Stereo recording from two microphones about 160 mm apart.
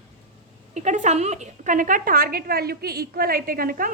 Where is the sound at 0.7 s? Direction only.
50° right (ahead or behind).